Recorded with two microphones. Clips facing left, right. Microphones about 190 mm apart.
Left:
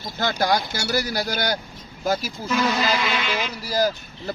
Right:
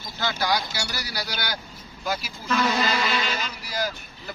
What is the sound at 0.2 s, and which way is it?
Speech, 50° left (ahead or behind).